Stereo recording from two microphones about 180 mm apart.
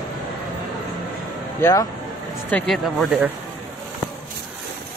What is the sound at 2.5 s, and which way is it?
Speech, 5° left (ahead or behind).